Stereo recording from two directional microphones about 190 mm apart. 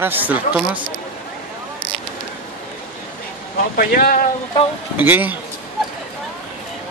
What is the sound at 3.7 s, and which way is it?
Speech, 45° left (ahead or behind).